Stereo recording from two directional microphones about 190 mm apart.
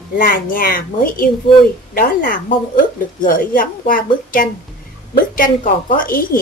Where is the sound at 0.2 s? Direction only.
50° left (ahead or behind).